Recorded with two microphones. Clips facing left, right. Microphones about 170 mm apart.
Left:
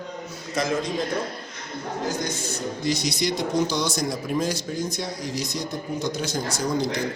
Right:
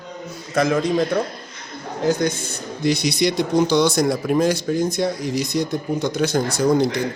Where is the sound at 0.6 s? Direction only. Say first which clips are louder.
Right 6 dB; 55° right (ahead or behind).